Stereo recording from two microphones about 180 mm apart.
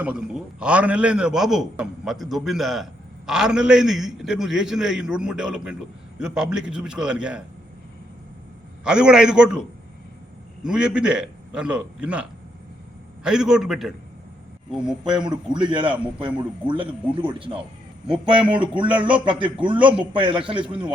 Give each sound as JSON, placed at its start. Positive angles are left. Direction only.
{"t": 0.0, "sound": "a man's voice", "side_deg": -5}
{"t": 8.8, "sound": "a man's voice", "side_deg": -5}
{"t": 13.2, "sound": "a man's voice", "side_deg": -5}
{"t": 15.2, "sound": "a man's voice", "side_deg": -25}
{"t": 18.9, "sound": "speech", "side_deg": -10}
{"t": 19.2, "sound": "a man's voice", "side_deg": -25}